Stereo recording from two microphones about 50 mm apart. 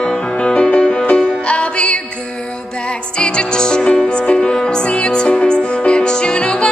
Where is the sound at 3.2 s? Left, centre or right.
Centre.